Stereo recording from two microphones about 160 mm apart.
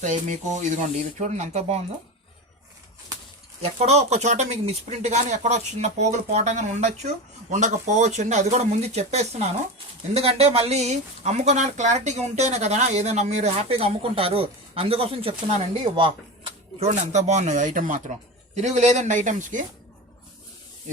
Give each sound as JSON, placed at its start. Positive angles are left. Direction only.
{"t": 0.0, "sound": "speech", "side_deg": -50}
{"t": 3.6, "sound": "speech", "side_deg": -40}
{"t": 16.9, "sound": "speech", "side_deg": -45}